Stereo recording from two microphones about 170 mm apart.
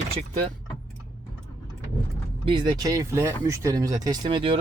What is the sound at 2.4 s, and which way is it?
Speech, 30° right (ahead or behind).